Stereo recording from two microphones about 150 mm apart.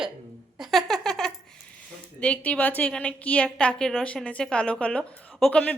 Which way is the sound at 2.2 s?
5° left (ahead or behind).